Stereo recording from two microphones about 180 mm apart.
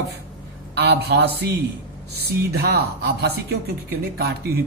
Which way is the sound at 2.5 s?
60° right (ahead or behind).